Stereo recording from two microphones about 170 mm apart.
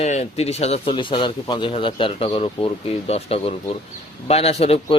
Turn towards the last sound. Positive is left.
turn(degrees=35)  # may be behind; listen again after turning